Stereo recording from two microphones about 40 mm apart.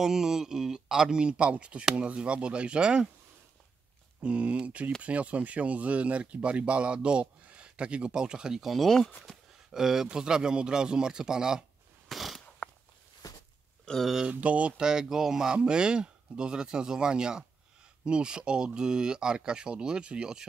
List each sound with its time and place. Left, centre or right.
0.0 s speech: centre
4.2 s speech: right
8.6 s speech: centre
9.7 s speech: centre
12.1 s mechanisms: centre
13.9 s a sound: left
14.4 s speech: right
14.8 s speech: centre
15.5 s speech: right